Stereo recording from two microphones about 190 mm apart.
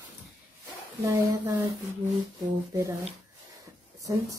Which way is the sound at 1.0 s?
20° right (ahead or behind).